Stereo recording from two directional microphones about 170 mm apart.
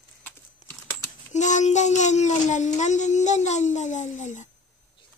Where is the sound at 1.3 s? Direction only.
45° left (ahead or behind).